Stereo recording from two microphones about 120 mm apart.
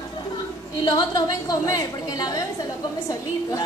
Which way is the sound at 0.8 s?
40° left (ahead or behind).